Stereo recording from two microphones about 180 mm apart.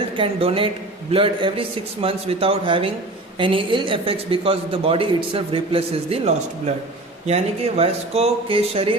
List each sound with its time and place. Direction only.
0.2 s a man's voice: 30° right (ahead or behind)